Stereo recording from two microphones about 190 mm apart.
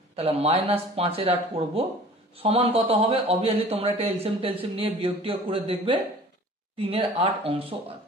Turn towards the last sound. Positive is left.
turn(degrees=-30)  # may be behind; listen again after turning